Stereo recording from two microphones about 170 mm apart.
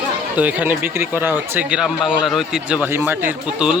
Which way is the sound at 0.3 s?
10° right (ahead or behind).